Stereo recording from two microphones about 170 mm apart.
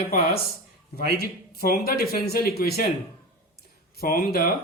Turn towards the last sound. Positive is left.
turn(degrees=60)  # may be behind; listen again after turning